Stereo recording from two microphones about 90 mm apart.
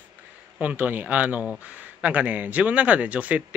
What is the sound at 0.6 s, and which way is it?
Speech, 15° right (ahead or behind).